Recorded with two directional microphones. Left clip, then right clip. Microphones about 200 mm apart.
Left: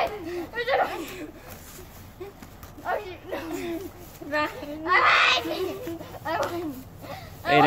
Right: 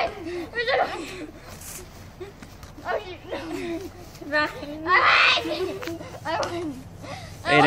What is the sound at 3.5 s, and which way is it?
Speech, 10° left (ahead or behind).